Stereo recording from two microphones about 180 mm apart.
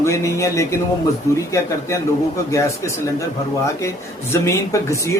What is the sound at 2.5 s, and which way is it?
Speech, 15° left (ahead or behind).